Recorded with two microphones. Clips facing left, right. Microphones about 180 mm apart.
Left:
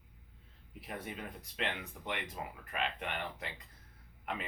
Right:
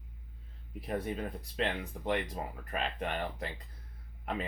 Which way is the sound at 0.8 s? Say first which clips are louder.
Right 8 dB; 35° right (ahead or behind).